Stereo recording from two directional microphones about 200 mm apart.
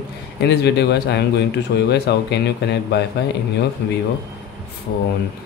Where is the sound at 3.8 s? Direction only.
55° left (ahead or behind).